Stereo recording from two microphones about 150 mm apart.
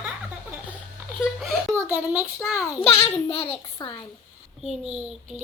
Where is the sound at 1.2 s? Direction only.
5° right (ahead or behind).